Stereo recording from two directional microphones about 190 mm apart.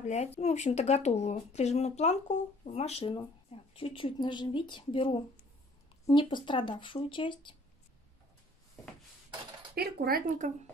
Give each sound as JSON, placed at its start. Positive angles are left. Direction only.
{"t": 0.0, "sound": "speech", "side_deg": 35}
{"t": 9.8, "sound": "speech", "side_deg": -55}